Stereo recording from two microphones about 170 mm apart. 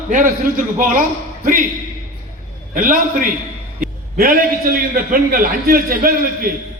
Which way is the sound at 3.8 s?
55° right (ahead or behind).